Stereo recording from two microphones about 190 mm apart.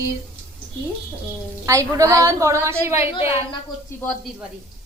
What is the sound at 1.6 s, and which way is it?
A woman's voice, 15° right (ahead or behind).